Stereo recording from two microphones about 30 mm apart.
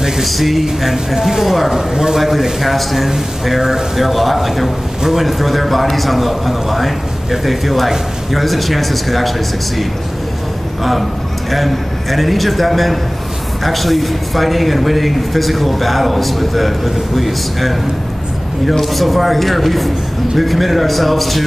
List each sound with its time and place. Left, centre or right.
0.2 s a man's voice: centre
1.8 s a man's voice: centre
2.1 s a man's voice: centre
10.8 s a man's voice: centre